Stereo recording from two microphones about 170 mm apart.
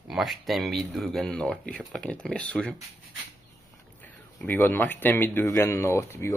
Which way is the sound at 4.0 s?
10° left (ahead or behind).